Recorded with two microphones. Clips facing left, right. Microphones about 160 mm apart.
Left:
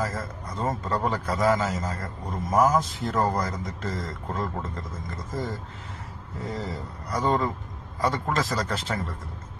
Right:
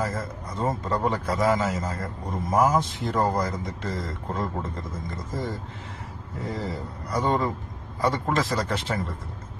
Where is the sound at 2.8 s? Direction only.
25° right (ahead or behind).